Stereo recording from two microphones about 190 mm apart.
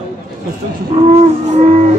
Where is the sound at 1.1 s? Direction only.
35° right (ahead or behind).